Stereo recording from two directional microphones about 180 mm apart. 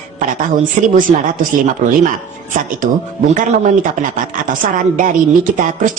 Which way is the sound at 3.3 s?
45° right (ahead or behind).